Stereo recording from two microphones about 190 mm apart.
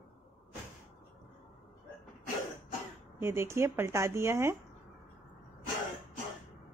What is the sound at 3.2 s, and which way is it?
Speech, 15° right (ahead or behind).